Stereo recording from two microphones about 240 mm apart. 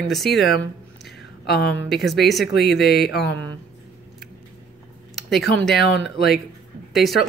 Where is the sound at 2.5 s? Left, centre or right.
Left.